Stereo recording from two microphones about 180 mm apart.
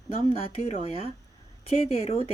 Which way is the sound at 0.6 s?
35° left (ahead or behind).